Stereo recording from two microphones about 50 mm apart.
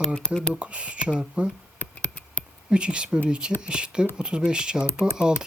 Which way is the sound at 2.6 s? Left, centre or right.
Centre.